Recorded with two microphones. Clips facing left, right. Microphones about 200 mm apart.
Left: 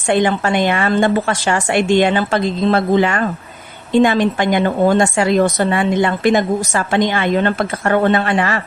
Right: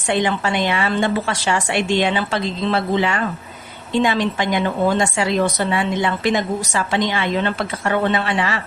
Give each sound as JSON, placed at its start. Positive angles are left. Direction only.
{"t": 0.1, "sound": "a woman's voice", "side_deg": 50}